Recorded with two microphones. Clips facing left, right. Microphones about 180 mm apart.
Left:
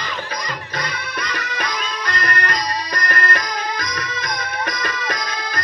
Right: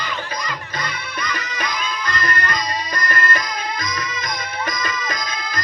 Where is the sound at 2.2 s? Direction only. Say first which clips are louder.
Left 1 dB; 65° left (ahead or behind).